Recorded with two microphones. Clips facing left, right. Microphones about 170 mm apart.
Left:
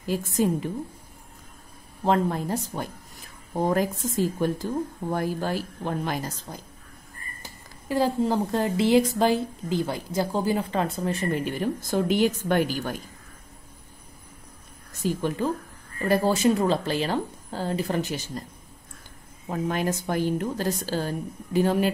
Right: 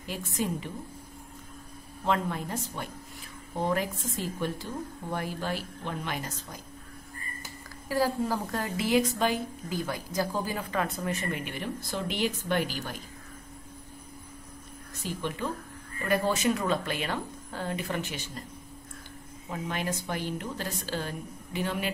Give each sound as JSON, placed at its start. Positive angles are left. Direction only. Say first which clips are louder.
{"t": 0.0, "sound": "a woman's voice", "louder": "left 8 dB", "side_deg": 45}
{"t": 2.0, "sound": "a woman's voice", "louder": "left 6 dB", "side_deg": 35}
{"t": 7.9, "sound": "a woman's voice", "louder": "left 4 dB", "side_deg": 25}
{"t": 15.0, "sound": "a woman's voice", "louder": "left 7 dB", "side_deg": 40}
{"t": 19.5, "sound": "a woman's voice", "louder": "left 6 dB", "side_deg": 45}